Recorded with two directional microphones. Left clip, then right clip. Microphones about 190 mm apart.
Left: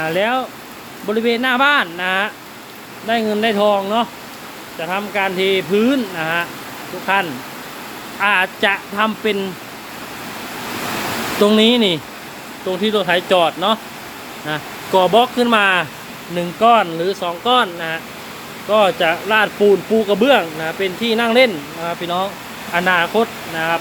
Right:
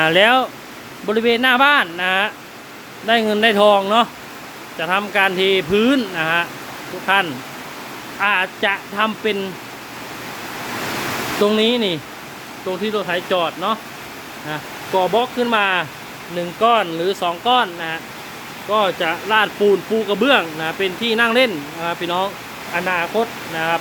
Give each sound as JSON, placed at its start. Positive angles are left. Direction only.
{"t": 0.0, "sound": "speech", "side_deg": -20}
{"t": 3.1, "sound": "speech", "side_deg": -15}
{"t": 11.3, "sound": "speech", "side_deg": 10}
{"t": 22.7, "sound": "speech", "side_deg": 15}